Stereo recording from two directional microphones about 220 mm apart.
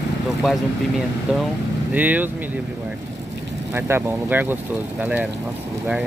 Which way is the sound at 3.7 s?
10° right (ahead or behind).